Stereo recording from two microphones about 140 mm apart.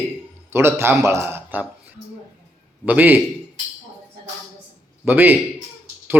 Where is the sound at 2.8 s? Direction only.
10° right (ahead or behind).